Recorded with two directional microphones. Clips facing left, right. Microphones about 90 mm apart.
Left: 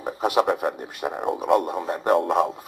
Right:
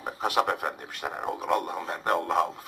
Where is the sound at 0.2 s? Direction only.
10° left (ahead or behind).